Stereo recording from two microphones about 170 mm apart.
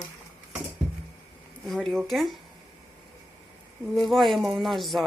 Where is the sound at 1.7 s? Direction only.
Centre (ahead or behind).